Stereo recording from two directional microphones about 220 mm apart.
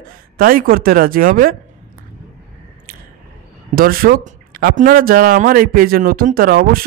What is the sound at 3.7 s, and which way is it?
Speech, 40° right (ahead or behind).